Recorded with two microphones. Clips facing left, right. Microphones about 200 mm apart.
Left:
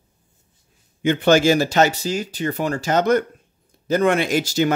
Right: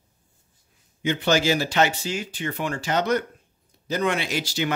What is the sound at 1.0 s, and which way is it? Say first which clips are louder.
Speech: left 6 dB; 55° left (ahead or behind).